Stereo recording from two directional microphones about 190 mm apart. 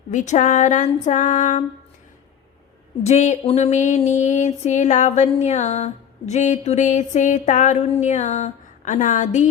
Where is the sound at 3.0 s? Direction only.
35° left (ahead or behind).